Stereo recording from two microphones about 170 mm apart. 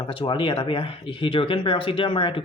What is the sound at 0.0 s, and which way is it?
Speech, 30° left (ahead or behind).